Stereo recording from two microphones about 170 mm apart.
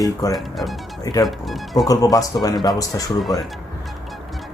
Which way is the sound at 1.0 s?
20° left (ahead or behind).